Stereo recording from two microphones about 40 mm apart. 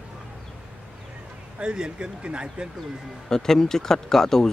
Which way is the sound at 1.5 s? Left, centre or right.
Right.